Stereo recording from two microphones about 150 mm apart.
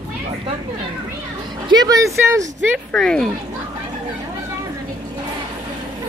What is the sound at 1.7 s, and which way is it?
Speech, 25° right (ahead or behind).